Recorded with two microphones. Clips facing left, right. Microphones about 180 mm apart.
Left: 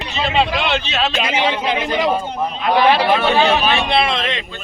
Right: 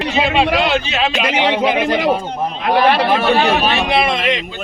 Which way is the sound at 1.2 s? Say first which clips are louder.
Right 3 dB; 65° right (ahead or behind).